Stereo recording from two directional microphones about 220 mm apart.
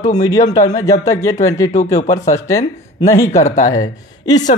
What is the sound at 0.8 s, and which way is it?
Speech, 15° left (ahead or behind).